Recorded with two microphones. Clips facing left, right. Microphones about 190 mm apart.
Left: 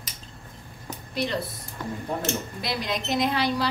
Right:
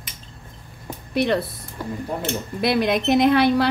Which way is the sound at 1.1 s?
60° right (ahead or behind).